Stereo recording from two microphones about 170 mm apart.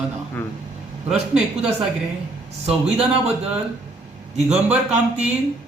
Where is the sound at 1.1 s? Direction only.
40° right (ahead or behind).